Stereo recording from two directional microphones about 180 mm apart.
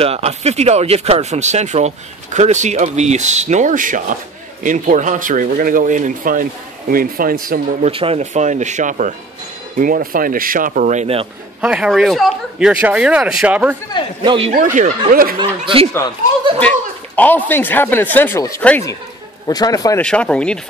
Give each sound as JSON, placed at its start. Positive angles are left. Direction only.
{"t": 0.0, "sound": "speech", "side_deg": -35}
{"t": 7.9, "sound": "speech", "side_deg": -30}
{"t": 11.6, "sound": "speech", "side_deg": -5}
{"t": 14.2, "sound": "a man's voice", "side_deg": -25}
{"t": 14.5, "sound": "speech", "side_deg": -45}
{"t": 16.5, "sound": "a sound", "side_deg": 10}
{"t": 17.5, "sound": "speech", "side_deg": 10}
{"t": 19.4, "sound": "a man's voice", "side_deg": 20}
{"t": 20.0, "sound": "speech", "side_deg": 5}